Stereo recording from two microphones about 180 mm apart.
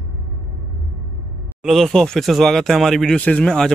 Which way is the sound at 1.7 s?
Centre (ahead or behind).